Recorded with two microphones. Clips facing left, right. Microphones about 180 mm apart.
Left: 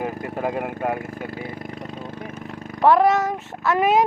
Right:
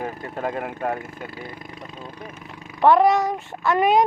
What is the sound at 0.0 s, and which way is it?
Vehicle, 15° left (ahead or behind).